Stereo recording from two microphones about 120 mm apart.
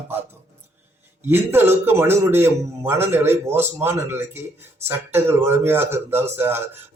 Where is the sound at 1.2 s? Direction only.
20° right (ahead or behind).